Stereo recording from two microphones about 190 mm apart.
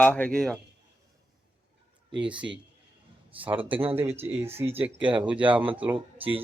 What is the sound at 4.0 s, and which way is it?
Speech, 10° right (ahead or behind).